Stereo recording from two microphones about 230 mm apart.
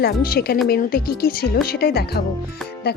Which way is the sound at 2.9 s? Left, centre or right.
Left.